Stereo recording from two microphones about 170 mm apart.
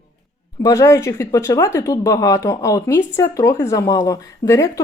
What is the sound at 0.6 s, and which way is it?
Speech, 20° left (ahead or behind).